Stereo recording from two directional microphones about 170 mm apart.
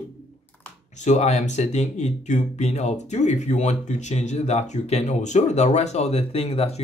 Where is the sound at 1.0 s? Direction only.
40° left (ahead or behind).